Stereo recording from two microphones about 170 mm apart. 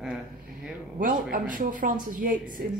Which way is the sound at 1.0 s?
55° right (ahead or behind).